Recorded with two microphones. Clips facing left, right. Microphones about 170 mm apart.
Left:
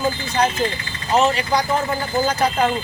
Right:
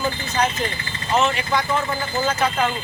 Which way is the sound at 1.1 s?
35° left (ahead or behind).